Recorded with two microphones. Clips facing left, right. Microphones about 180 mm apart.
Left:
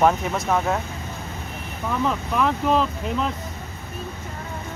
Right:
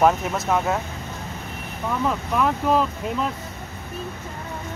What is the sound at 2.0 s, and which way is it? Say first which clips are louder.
Speech: even; 5° right (ahead or behind).